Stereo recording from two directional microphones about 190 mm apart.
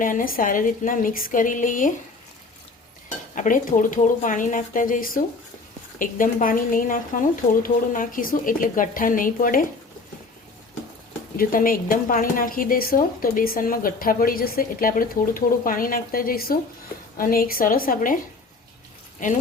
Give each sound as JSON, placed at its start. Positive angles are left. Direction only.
{"t": 0.0, "sound": "a woman's voice", "side_deg": 45}
{"t": 3.3, "sound": "a woman's voice", "side_deg": 45}
{"t": 11.3, "sound": "a woman's voice", "side_deg": 50}
{"t": 19.2, "sound": "a woman's voice", "side_deg": 45}